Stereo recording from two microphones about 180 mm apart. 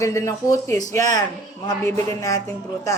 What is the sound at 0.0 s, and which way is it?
Speech, 15° left (ahead or behind).